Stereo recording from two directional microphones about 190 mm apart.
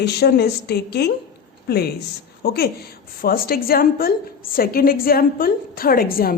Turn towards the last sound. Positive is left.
turn(degrees=50)  # may be behind; listen again after turning